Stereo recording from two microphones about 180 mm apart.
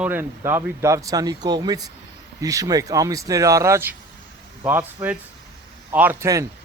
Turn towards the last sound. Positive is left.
turn(degrees=-15)  # may be behind; listen again after turning